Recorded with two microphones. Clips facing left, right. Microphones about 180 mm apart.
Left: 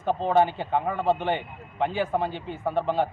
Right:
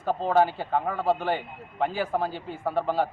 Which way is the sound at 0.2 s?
5° right (ahead or behind).